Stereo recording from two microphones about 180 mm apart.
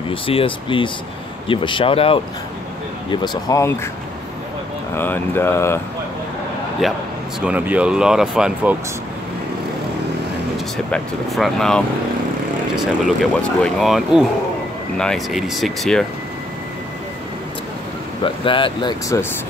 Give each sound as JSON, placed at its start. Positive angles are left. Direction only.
{"t": 0.1, "sound": "speech", "side_deg": 30}
{"t": 4.9, "sound": "speech", "side_deg": 10}
{"t": 6.8, "sound": "speech", "side_deg": 0}
{"t": 10.9, "sound": "speech", "side_deg": 0}
{"t": 18.2, "sound": "speech", "side_deg": 30}